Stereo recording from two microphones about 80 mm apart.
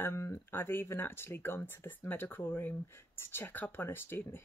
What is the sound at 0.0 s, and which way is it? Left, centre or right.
Speech, left.